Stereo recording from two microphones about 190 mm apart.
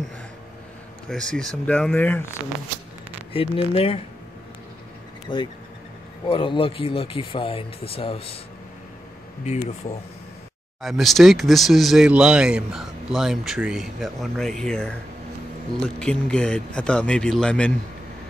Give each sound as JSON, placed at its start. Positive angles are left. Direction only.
{"t": 1.0, "sound": "speech", "side_deg": 5}
{"t": 3.3, "sound": "speech", "side_deg": 30}
{"t": 5.3, "sound": "speech", "side_deg": 25}
{"t": 9.4, "sound": "speech", "side_deg": 35}
{"t": 10.8, "sound": "speech", "side_deg": 0}